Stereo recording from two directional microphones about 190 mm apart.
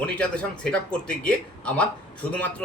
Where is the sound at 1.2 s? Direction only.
5° left (ahead or behind).